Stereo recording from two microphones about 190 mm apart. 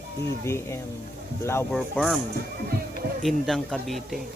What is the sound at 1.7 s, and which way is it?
Music, centre (ahead or behind).